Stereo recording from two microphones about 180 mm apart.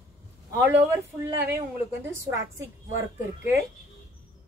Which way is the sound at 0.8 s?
10° right (ahead or behind).